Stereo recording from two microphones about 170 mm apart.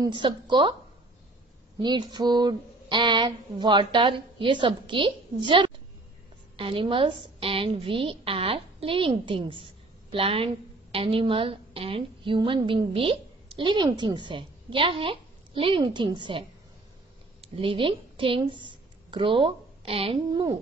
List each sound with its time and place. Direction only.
0.0 s speech: 25° right (ahead or behind)
1.8 s a woman's voice: 25° right (ahead or behind)